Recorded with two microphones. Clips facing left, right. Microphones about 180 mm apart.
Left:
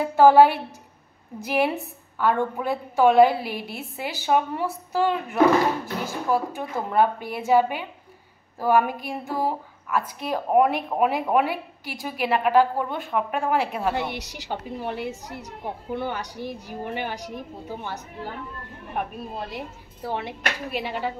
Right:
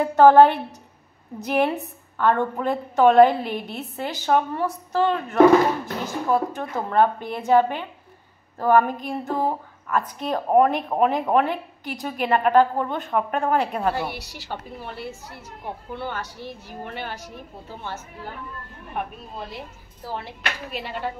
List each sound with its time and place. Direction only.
0.1 s a woman's voice: 10° left (ahead or behind)
13.9 s a woman's voice: 20° left (ahead or behind)
20.1 s a woman's voice: 15° left (ahead or behind)